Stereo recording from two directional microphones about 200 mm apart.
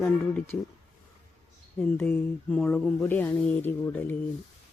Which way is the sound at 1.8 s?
10° left (ahead or behind).